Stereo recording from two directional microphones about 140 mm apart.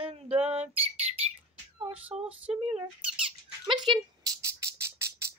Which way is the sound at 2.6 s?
40° right (ahead or behind).